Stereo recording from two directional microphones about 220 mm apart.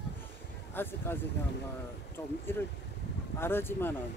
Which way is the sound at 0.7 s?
10° left (ahead or behind).